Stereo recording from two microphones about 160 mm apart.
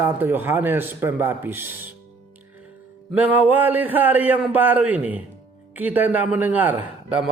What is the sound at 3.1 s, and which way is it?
A man's voice, 10° right (ahead or behind).